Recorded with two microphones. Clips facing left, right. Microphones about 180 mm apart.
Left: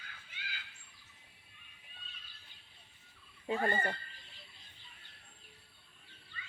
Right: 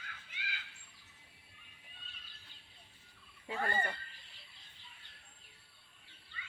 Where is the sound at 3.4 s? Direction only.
25° left (ahead or behind).